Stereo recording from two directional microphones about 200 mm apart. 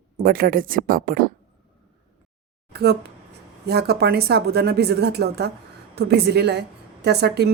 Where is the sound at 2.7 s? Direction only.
55° right (ahead or behind).